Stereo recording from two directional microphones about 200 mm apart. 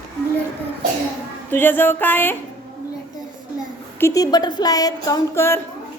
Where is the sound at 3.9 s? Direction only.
15° left (ahead or behind).